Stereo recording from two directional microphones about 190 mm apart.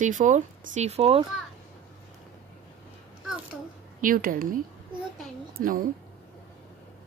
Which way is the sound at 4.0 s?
50° right (ahead or behind).